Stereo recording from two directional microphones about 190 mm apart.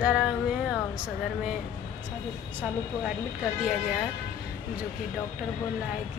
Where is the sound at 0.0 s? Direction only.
5° right (ahead or behind).